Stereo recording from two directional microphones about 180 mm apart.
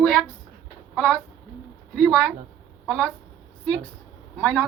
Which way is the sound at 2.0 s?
5° left (ahead or behind).